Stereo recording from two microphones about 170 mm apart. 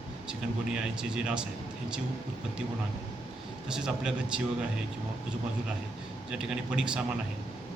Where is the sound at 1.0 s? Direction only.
5° right (ahead or behind).